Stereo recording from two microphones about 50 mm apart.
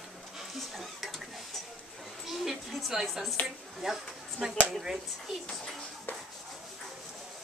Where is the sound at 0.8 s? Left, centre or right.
Centre.